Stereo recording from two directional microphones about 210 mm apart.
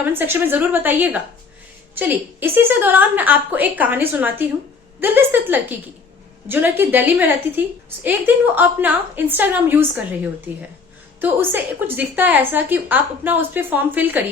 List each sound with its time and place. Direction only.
0.0 s a woman's voice: 10° right (ahead or behind)
11.2 s a woman's voice: 10° right (ahead or behind)